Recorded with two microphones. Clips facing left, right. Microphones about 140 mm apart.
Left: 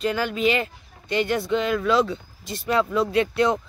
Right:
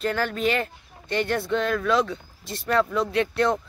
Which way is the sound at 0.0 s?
5° left (ahead or behind).